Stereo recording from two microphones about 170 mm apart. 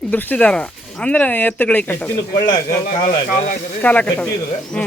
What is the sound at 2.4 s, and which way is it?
Speech, 25° left (ahead or behind).